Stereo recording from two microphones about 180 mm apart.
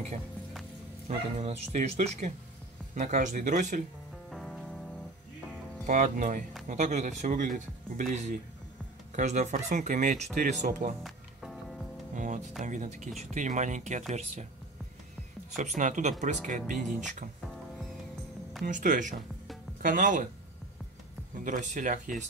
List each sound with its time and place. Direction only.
1.0 s speech: 40° right (ahead or behind)
4.3 s music: centre (ahead or behind)
5.9 s speech: 45° right (ahead or behind)
11.1 s music: centre (ahead or behind)
12.2 s speech: 45° right (ahead or behind)
15.5 s speech: 40° right (ahead or behind)
18.6 s speech: 45° right (ahead or behind)
21.5 s speech: 45° right (ahead or behind)